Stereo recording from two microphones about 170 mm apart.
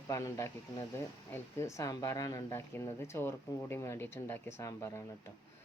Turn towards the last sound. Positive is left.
turn(degrees=15)  # may be behind; listen again after turning